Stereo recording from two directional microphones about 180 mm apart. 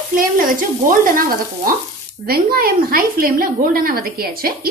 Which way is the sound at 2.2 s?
55° right (ahead or behind).